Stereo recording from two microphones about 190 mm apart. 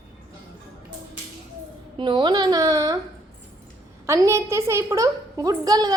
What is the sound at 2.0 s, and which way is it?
Speech, 25° right (ahead or behind).